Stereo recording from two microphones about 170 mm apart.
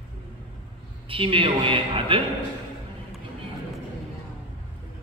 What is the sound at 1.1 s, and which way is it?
A man's voice, 30° right (ahead or behind).